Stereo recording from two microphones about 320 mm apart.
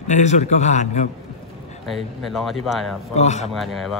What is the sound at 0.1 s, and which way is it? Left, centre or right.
Speech, left.